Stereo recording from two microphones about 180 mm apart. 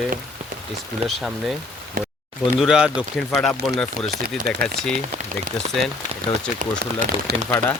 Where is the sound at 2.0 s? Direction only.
50° right (ahead or behind).